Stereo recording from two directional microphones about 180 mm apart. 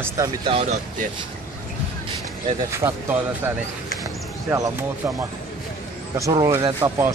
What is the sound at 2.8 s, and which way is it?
Speech, 20° right (ahead or behind).